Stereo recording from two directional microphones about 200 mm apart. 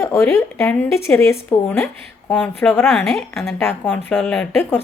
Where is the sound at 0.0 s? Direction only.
10° left (ahead or behind).